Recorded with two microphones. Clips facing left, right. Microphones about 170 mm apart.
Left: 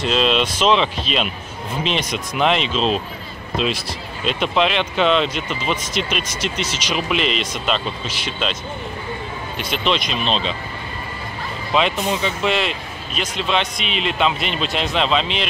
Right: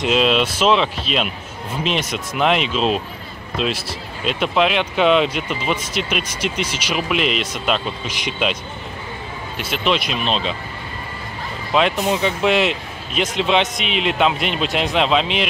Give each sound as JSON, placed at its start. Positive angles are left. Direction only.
{"t": 0.0, "sound": "speech", "side_deg": -5}
{"t": 9.6, "sound": "speech", "side_deg": -5}
{"t": 11.7, "sound": "speech", "side_deg": -5}
{"t": 13.8, "sound": "a man's voice", "side_deg": -65}
{"t": 14.5, "sound": "speech", "side_deg": -10}